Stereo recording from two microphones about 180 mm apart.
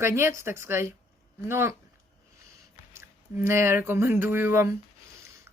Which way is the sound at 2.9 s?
15° right (ahead or behind).